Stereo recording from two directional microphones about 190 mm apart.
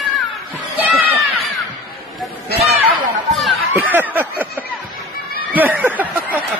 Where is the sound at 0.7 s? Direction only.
10° right (ahead or behind).